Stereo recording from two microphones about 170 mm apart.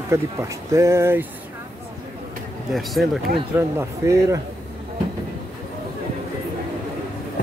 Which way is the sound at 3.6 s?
15° right (ahead or behind).